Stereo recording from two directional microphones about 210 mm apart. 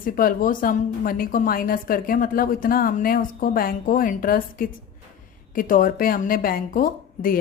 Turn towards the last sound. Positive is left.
turn(degrees=40)  # may be behind; listen again after turning